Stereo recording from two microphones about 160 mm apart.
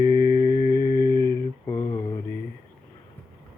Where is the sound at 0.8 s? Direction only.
60° left (ahead or behind).